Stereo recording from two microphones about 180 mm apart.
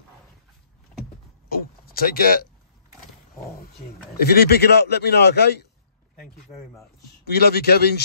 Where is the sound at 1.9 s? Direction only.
55° left (ahead or behind).